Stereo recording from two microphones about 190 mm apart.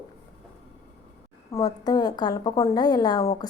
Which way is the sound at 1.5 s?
20° left (ahead or behind).